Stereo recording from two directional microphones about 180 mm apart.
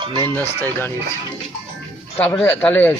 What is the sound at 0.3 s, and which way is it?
Speech, 10° left (ahead or behind).